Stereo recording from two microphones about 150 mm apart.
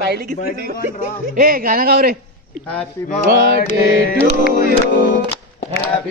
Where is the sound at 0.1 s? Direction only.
90° right.